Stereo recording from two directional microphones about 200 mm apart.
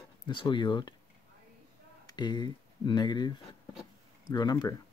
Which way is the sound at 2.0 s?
20° left (ahead or behind).